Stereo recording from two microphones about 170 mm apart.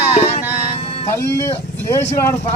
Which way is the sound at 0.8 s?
35° left (ahead or behind).